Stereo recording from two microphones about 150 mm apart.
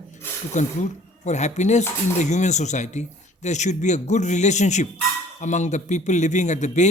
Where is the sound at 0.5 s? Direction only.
50° left (ahead or behind).